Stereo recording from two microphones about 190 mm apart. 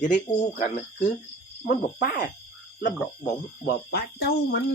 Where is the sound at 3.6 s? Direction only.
55° left (ahead or behind).